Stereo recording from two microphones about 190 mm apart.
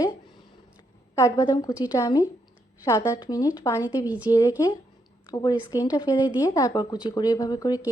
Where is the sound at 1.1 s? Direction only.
20° left (ahead or behind).